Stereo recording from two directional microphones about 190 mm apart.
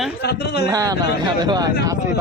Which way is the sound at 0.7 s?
20° right (ahead or behind).